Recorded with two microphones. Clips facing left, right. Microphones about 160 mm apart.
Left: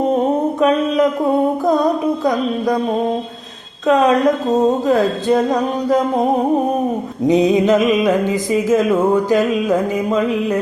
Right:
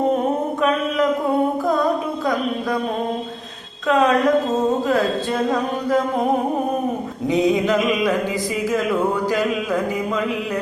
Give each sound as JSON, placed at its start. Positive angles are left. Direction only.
{"t": 7.3, "sound": "mantra", "side_deg": 20}